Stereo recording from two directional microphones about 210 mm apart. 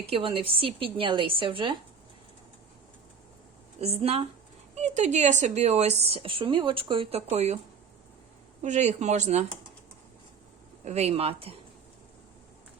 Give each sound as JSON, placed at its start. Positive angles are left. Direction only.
{"t": 0.0, "sound": "a woman's voice", "side_deg": -25}
{"t": 3.8, "sound": "a woman's voice", "side_deg": -30}
{"t": 8.6, "sound": "speech", "side_deg": -35}
{"t": 10.8, "sound": "a woman's voice", "side_deg": -30}